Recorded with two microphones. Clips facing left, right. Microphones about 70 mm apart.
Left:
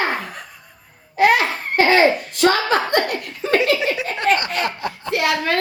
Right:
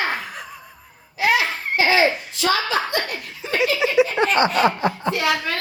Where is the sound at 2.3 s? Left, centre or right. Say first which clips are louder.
Left 4 dB; left.